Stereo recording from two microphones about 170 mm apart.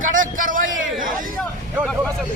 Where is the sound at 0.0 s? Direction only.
50° right (ahead or behind).